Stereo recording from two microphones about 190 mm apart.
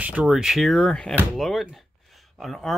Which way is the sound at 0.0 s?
5° right (ahead or behind).